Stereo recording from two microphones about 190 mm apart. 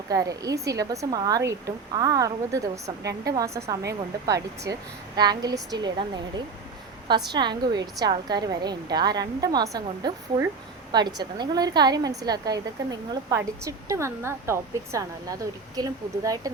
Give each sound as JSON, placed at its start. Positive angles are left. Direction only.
{"t": 0.1, "sound": "a woman's voice", "side_deg": -20}